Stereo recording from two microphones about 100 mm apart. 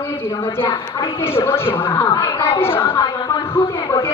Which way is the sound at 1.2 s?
25° left (ahead or behind).